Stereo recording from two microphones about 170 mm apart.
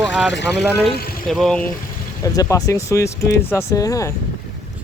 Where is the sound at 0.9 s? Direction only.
60° left (ahead or behind).